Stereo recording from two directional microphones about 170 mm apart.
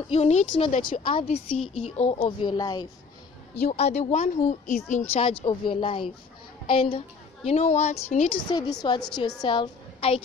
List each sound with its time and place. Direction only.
0.1 s a woman's voice: 40° left (ahead or behind)
1.1 s a woman's voice: 35° left (ahead or behind)
3.6 s speech: 40° left (ahead or behind)
5.1 s a woman's voice: 35° left (ahead or behind)
8.5 s a woman's voice: 25° left (ahead or behind)